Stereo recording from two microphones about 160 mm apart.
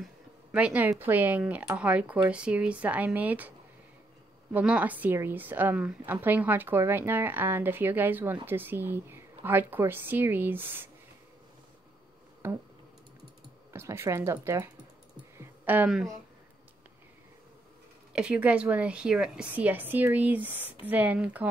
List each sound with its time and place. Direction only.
0.0 s a woman's voice: 5° right (ahead or behind)
12.4 s a woman's voice: 15° right (ahead or behind)
13.7 s a woman's voice: 15° right (ahead or behind)
15.3 s a sound: 15° right (ahead or behind)
18.1 s a woman's voice: 5° right (ahead or behind)